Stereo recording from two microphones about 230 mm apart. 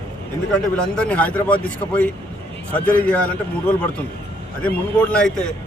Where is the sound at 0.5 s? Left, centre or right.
Centre.